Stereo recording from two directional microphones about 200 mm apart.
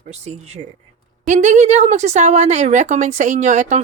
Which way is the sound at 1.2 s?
35° right (ahead or behind).